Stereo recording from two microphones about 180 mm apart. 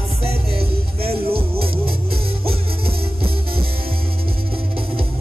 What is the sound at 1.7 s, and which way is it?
Music, 55° right (ahead or behind).